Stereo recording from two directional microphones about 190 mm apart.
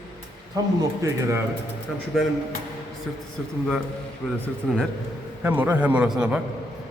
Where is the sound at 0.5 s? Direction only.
15° right (ahead or behind).